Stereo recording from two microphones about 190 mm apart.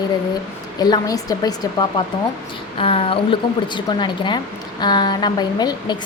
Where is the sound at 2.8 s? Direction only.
30° left (ahead or behind).